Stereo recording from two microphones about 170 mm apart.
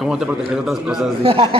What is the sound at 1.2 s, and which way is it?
Speech, 30° right (ahead or behind).